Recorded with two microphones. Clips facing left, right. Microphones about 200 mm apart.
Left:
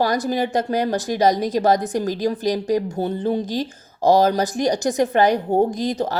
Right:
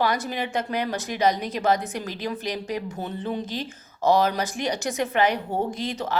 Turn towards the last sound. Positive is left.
turn(degrees=35)  # may be behind; listen again after turning